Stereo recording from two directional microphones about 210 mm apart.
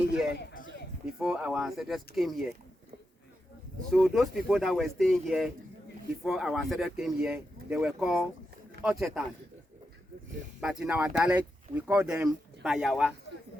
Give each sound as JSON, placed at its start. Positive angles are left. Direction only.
{"t": 0.3, "sound": "a sound", "side_deg": 40}
{"t": 1.0, "sound": "speech", "side_deg": -5}
{"t": 3.9, "sound": "speech", "side_deg": 0}
{"t": 10.6, "sound": "speech", "side_deg": -5}